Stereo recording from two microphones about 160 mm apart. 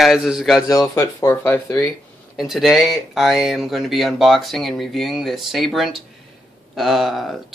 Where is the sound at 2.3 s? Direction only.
Centre (ahead or behind).